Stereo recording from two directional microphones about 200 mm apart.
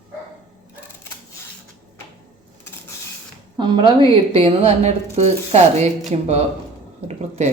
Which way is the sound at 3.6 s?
25° right (ahead or behind).